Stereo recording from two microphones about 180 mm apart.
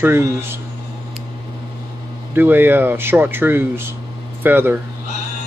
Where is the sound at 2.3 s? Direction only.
10° right (ahead or behind).